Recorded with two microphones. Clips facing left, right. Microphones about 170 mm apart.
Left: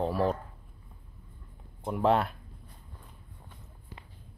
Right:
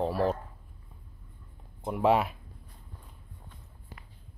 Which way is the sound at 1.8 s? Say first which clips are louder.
Right 1 dB; 5° right (ahead or behind).